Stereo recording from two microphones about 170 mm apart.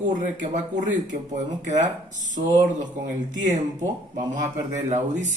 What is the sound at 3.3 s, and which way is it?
Speech, 45° right (ahead or behind).